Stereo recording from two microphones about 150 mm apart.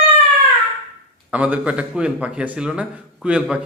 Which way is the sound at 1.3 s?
10° right (ahead or behind).